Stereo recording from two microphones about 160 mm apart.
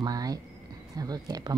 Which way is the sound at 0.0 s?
25° right (ahead or behind).